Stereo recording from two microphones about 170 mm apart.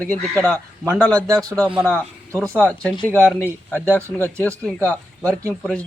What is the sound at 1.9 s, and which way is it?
A man's voice, 5° left (ahead or behind).